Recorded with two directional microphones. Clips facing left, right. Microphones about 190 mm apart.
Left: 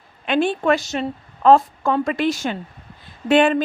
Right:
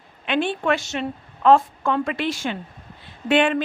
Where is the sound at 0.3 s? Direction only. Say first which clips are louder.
Left 4 dB; 40° left (ahead or behind).